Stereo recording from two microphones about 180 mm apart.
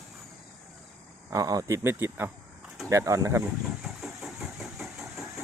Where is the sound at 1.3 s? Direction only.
20° right (ahead or behind).